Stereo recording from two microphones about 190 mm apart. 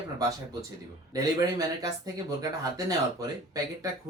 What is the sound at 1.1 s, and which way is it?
Speech, 20° right (ahead or behind).